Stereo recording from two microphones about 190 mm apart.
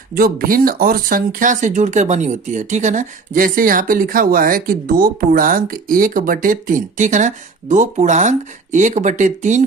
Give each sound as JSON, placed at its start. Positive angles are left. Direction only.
{"t": 0.1, "sound": "speech", "side_deg": -50}